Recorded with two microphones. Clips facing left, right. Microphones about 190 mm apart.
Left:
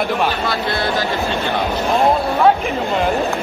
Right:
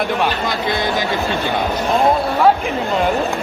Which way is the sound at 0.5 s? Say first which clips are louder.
Even; 15° right (ahead or behind).